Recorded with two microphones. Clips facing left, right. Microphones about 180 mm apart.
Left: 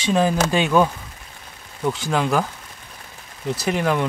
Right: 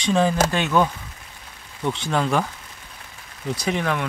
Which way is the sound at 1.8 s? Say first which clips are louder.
Left 1 dB; centre (ahead or behind).